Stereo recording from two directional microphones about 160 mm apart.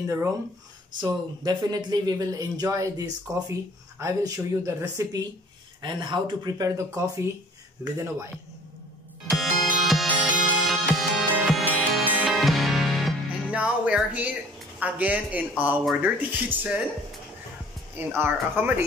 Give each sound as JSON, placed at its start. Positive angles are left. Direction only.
{"t": 0.0, "sound": "speech", "side_deg": -20}
{"t": 7.8, "sound": "speech", "side_deg": -20}
{"t": 9.3, "sound": "music", "side_deg": 0}
{"t": 14.8, "sound": "speech", "side_deg": -10}
{"t": 17.9, "sound": "speech", "side_deg": -15}